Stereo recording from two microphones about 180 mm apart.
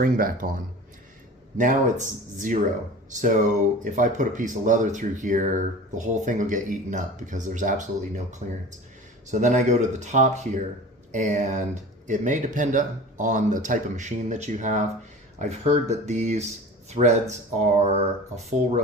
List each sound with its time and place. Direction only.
0.0 s speech: 50° right (ahead or behind)
1.5 s speech: 45° right (ahead or behind)